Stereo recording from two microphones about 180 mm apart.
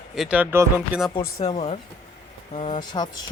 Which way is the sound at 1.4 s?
35° left (ahead or behind).